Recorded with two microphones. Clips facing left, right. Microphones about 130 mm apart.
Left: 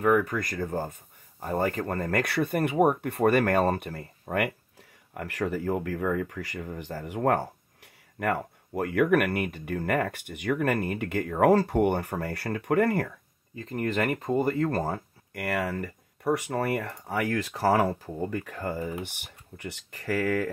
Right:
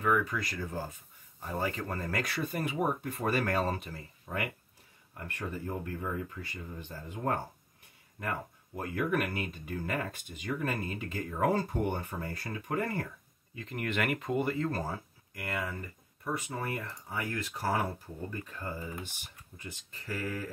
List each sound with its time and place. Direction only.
0.0 s speech: 50° left (ahead or behind)
5.1 s speech: 90° left; by 13.1 s 65° left (ahead or behind)
13.6 s speech: 35° left (ahead or behind)
14.6 s speech: 60° left (ahead or behind); by 20.5 s 90° left